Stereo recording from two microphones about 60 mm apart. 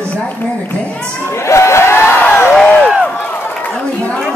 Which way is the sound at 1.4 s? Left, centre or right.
Left.